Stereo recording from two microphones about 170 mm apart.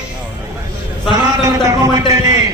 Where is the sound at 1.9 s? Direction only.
20° right (ahead or behind).